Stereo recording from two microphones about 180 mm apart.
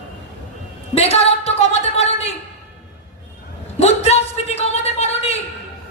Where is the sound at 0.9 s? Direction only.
35° left (ahead or behind).